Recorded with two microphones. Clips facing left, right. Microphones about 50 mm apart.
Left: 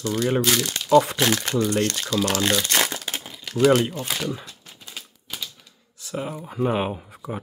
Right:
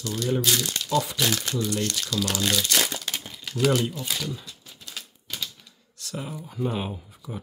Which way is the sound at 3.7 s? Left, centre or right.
Left.